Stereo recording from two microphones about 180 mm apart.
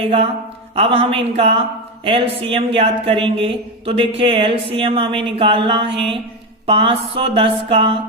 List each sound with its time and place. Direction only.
0.0 s speech: 35° right (ahead or behind)